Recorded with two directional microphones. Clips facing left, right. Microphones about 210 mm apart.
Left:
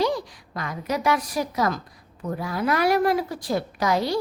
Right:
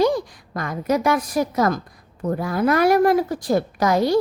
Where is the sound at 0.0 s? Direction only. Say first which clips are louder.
Right 5 dB; 50° right (ahead or behind).